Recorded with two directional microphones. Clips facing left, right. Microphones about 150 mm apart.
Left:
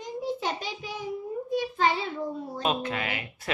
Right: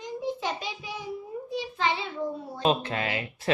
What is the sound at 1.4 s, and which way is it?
Child singing, 45° left (ahead or behind).